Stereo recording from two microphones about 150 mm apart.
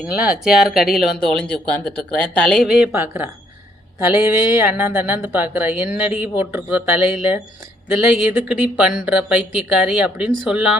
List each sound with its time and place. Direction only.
0.0 s speech: 10° right (ahead or behind)
2.9 s speech: 15° right (ahead or behind)